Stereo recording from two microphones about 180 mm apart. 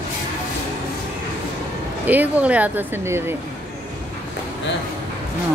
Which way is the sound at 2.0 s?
10° right (ahead or behind).